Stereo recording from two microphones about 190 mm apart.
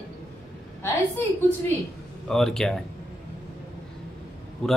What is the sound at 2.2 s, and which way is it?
Speech, centre (ahead or behind).